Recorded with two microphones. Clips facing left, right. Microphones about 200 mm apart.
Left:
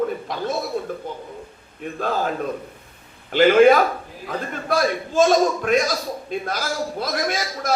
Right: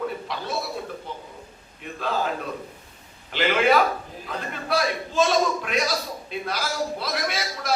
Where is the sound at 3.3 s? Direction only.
45° left (ahead or behind).